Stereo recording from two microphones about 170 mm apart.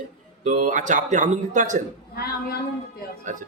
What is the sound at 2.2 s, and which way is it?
Speech, 65° left (ahead or behind).